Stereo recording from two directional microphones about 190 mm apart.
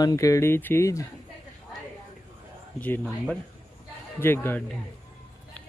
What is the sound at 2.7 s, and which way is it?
Speech, 10° left (ahead or behind).